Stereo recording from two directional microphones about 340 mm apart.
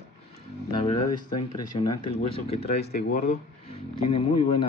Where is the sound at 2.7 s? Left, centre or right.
Left.